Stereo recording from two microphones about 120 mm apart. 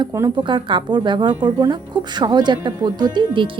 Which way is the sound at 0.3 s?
40° right (ahead or behind).